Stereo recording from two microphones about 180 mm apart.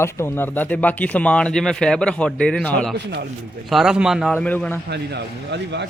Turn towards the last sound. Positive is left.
turn(degrees=-75)  # may be behind; listen again after turning